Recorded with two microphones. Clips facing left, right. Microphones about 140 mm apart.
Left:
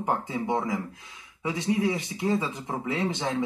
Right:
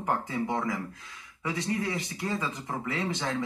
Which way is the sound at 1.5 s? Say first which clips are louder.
Left 5 dB; 5° left (ahead or behind).